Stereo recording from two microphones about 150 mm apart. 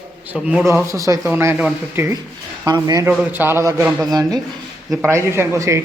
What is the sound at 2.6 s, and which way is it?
Speech, 25° right (ahead or behind).